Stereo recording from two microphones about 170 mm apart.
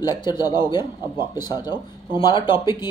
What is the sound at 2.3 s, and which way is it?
Speech, 25° left (ahead or behind).